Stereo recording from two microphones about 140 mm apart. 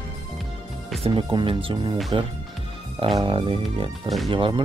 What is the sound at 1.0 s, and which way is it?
Speech, 40° right (ahead or behind).